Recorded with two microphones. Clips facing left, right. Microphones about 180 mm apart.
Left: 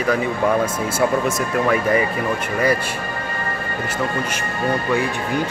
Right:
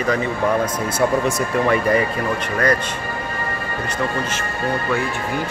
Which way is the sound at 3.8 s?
15° left (ahead or behind).